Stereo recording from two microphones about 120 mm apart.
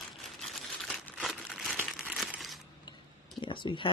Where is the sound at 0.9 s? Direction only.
Centre (ahead or behind).